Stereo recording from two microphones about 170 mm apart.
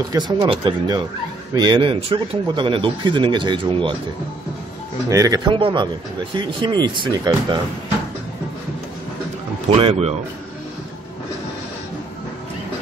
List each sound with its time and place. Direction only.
0.1 s speech: 25° right (ahead or behind)
5.1 s speech: 20° right (ahead or behind)
9.8 s speech: 35° right (ahead or behind)